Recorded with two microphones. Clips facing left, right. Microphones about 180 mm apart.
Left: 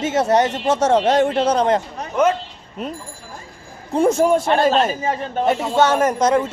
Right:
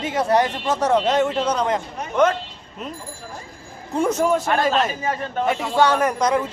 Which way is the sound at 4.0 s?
30° left (ahead or behind).